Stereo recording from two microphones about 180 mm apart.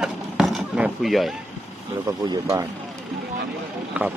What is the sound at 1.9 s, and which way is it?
Speech, 20° right (ahead or behind).